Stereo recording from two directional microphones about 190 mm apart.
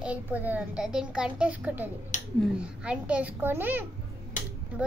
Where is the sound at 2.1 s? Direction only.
40° left (ahead or behind).